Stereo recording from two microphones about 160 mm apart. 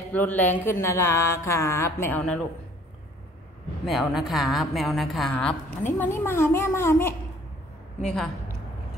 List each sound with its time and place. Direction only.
0.1 s speech: 10° left (ahead or behind)
3.8 s a woman's voice: centre (ahead or behind)
8.0 s a woman's voice: 5° left (ahead or behind)